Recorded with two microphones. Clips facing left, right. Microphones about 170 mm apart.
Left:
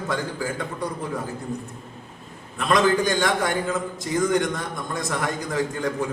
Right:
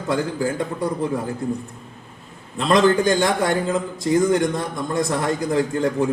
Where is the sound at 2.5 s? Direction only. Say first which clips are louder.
Right 4 dB; 30° right (ahead or behind).